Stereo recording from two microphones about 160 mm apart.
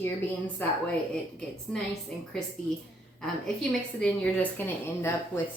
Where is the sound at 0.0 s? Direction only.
10° left (ahead or behind).